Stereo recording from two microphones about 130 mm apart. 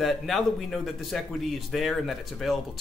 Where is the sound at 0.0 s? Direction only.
Centre (ahead or behind).